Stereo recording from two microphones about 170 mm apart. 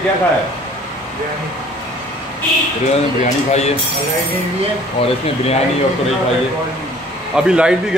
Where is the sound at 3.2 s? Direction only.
40° left (ahead or behind).